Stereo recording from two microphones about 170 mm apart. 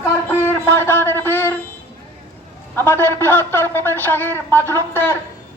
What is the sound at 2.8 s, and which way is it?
A man's voice, 15° left (ahead or behind).